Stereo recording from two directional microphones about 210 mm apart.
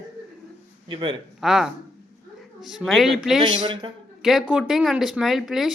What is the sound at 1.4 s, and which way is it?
Speech, centre (ahead or behind).